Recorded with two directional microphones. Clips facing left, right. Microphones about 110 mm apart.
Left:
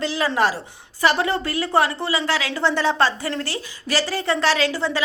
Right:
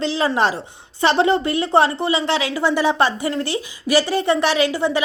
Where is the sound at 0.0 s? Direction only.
25° right (ahead or behind).